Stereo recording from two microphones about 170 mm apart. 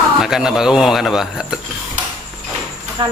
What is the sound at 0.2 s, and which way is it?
Speech, 5° right (ahead or behind).